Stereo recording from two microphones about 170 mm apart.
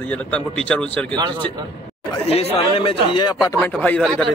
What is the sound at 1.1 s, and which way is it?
Speech, 25° right (ahead or behind).